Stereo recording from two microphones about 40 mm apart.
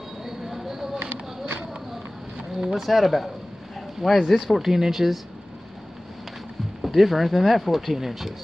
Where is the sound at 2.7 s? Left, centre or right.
Centre.